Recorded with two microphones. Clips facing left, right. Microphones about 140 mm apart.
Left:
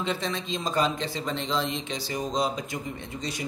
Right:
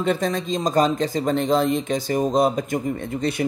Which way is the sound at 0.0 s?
50° right (ahead or behind).